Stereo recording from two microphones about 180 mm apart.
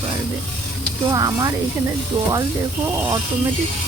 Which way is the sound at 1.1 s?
20° right (ahead or behind).